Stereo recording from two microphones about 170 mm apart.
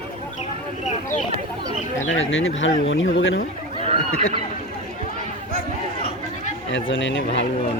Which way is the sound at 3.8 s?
35° right (ahead or behind).